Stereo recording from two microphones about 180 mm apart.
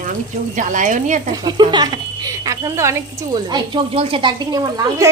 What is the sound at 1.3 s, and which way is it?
A woman's voice, 20° right (ahead or behind).